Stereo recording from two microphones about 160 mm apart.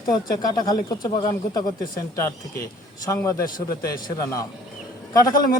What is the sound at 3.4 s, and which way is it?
Speech, 65° left (ahead or behind).